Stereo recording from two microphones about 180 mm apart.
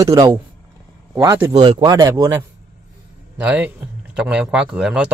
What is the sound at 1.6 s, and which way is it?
A man's voice, 25° right (ahead or behind).